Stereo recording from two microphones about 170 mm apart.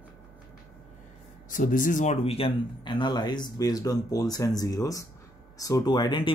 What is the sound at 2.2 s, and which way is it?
Speech, 35° left (ahead or behind).